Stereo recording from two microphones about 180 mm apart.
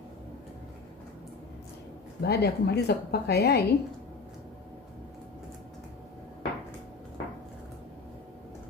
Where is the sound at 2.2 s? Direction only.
65° left (ahead or behind).